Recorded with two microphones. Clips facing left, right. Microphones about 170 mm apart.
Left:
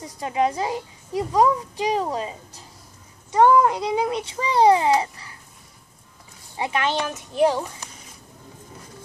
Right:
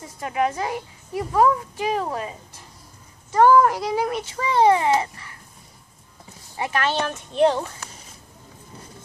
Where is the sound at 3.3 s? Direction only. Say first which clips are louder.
Right 1 dB; 20° left (ahead or behind).